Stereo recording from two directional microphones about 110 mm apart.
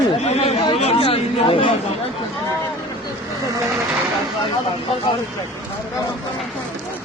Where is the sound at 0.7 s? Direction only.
65° left (ahead or behind).